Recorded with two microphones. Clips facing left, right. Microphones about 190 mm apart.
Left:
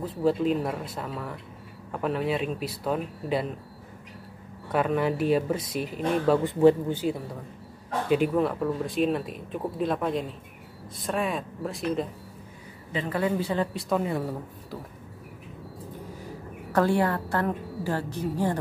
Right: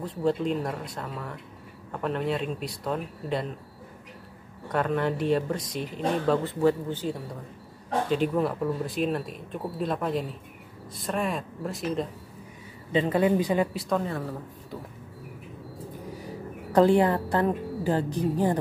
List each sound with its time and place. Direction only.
0.0 s speech: 5° left (ahead or behind)
4.6 s speech: 5° left (ahead or behind)
8.4 s speech: centre (ahead or behind)
12.9 s a woman's voice: 20° right (ahead or behind)
13.7 s speech: 5° left (ahead or behind)
14.0 s speech: 15° left (ahead or behind)
16.7 s a woman's voice: 20° right (ahead or behind)